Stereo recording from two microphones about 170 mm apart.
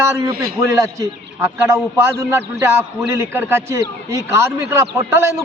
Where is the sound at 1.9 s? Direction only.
15° right (ahead or behind).